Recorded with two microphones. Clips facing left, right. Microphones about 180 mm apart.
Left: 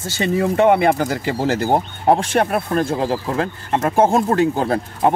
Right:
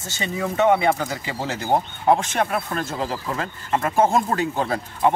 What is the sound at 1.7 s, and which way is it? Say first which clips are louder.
Speech: left 3 dB; 35° left (ahead or behind).